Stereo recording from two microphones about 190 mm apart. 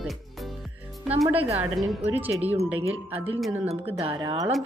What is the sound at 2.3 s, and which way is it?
Speech, 35° right (ahead or behind).